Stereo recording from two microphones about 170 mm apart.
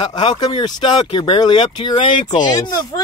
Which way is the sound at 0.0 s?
25° left (ahead or behind).